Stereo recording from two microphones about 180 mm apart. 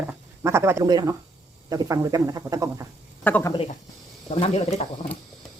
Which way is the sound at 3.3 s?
10° left (ahead or behind).